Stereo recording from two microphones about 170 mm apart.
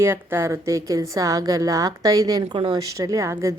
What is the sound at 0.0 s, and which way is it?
A woman's voice, 15° right (ahead or behind).